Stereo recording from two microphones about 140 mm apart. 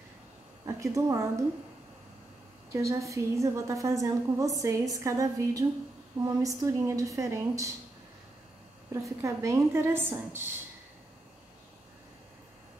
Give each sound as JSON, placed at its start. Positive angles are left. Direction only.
{"t": 0.7, "sound": "a woman's voice", "side_deg": -20}
{"t": 2.7, "sound": "a woman's voice", "side_deg": -20}
{"t": 9.2, "sound": "a woman's voice", "side_deg": -20}